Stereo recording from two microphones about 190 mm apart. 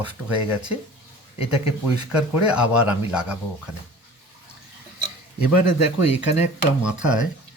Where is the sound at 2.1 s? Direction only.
5° right (ahead or behind).